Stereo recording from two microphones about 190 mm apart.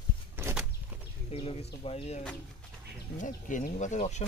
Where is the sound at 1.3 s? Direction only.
30° left (ahead or behind).